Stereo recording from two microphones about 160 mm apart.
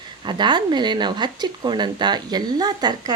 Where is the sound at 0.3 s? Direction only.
30° right (ahead or behind).